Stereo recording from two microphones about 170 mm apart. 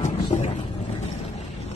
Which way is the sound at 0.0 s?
40° left (ahead or behind).